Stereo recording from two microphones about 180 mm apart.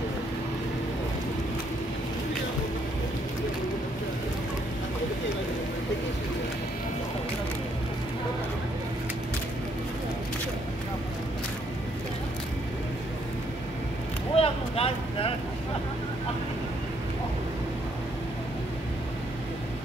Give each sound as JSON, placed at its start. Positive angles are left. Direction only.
{"t": 14.3, "sound": "vehicle", "side_deg": 30}